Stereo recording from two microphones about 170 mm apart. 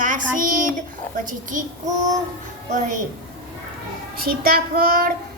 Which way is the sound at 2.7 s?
45° right (ahead or behind).